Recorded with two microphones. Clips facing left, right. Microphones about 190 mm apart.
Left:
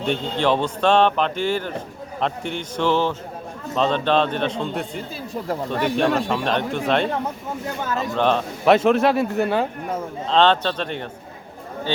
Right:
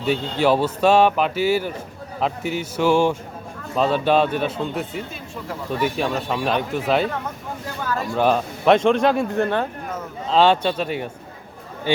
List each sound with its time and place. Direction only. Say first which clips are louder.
0.0 s speech: right 2 dB; 5° right (ahead or behind)
6.0 s speech: left 3 dB; 5° right (ahead or behind)
7.9 s speech: right 1 dB; 20° left (ahead or behind)
8.1 s speech: right 1 dB; 10° right (ahead or behind)
8.6 s speech: even; 5° left (ahead or behind)
10.2 s speech: right 1 dB; 5° right (ahead or behind)